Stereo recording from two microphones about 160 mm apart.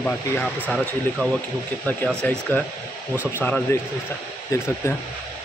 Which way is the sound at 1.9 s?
10° left (ahead or behind).